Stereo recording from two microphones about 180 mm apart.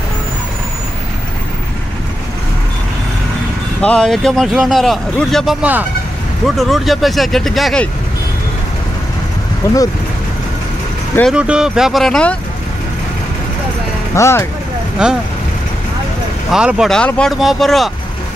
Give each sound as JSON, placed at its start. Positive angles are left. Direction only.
{"t": 3.8, "sound": "speech", "side_deg": 5}
{"t": 9.6, "sound": "speech", "side_deg": 15}
{"t": 11.3, "sound": "speech", "side_deg": -5}
{"t": 14.1, "sound": "speech", "side_deg": 15}
{"t": 15.0, "sound": "speech", "side_deg": -5}
{"t": 16.4, "sound": "speech", "side_deg": -5}